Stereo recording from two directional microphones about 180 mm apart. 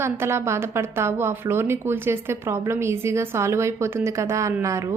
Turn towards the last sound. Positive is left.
turn(degrees=-15)  # may be behind; listen again after turning